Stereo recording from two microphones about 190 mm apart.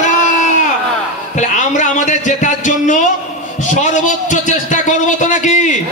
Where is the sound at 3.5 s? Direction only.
40° left (ahead or behind).